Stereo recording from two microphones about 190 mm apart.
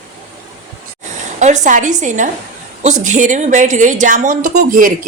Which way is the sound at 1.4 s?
40° right (ahead or behind).